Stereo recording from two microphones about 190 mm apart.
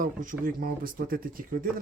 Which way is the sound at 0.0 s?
45° right (ahead or behind).